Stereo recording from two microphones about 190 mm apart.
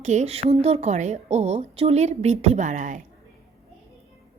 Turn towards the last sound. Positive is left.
turn(degrees=-40)  # may be behind; listen again after turning